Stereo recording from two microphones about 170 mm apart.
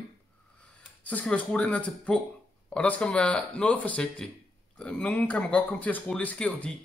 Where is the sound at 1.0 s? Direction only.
10° left (ahead or behind).